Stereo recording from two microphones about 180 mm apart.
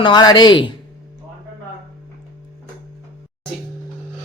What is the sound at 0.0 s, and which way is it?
Speech, 25° left (ahead or behind).